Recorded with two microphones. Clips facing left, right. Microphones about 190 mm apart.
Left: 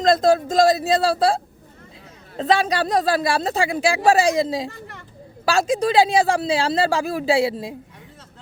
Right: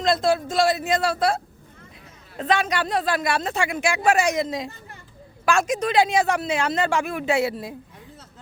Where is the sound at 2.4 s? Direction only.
30° left (ahead or behind).